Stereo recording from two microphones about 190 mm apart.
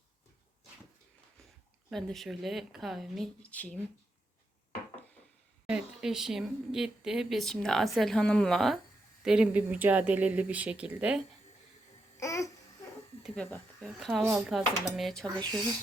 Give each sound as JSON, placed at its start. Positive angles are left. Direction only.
{"t": 1.9, "sound": "speech", "side_deg": 0}
{"t": 5.6, "sound": "speech", "side_deg": -5}
{"t": 12.1, "sound": "babbling", "side_deg": 15}
{"t": 13.2, "sound": "speech", "side_deg": 5}